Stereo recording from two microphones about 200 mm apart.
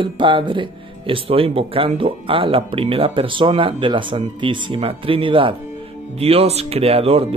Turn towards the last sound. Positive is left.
turn(degrees=-30)  # may be behind; listen again after turning